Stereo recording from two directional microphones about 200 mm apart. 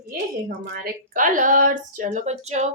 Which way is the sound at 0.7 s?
40° right (ahead or behind).